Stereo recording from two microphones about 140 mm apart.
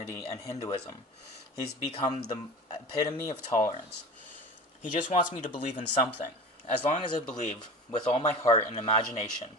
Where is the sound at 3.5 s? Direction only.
65° left (ahead or behind).